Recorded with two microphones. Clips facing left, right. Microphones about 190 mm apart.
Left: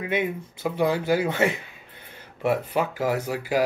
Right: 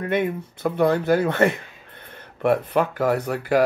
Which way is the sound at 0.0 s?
55° right (ahead or behind).